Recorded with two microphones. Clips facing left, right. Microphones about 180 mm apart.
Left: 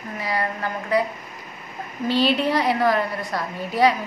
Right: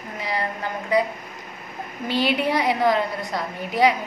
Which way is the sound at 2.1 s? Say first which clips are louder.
Left 2 dB; 15° right (ahead or behind).